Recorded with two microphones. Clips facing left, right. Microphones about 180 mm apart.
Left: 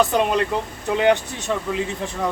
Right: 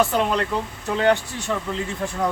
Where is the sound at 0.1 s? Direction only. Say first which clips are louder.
Left 2 dB; 15° left (ahead or behind).